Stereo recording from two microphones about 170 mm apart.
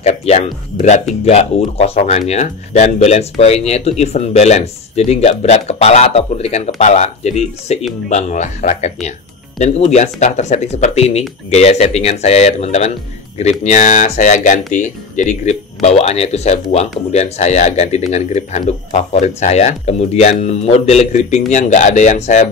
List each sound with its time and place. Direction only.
0.0 s speech: 40° left (ahead or behind)